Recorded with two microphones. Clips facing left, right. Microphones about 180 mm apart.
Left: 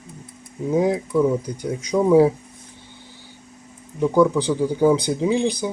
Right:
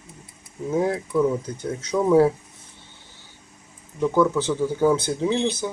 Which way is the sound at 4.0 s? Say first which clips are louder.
Left 3 dB; 10° left (ahead or behind).